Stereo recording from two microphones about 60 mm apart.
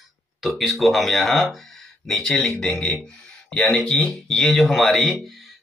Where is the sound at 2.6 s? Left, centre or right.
Centre.